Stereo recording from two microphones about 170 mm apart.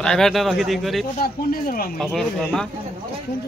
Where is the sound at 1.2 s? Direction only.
60° left (ahead or behind).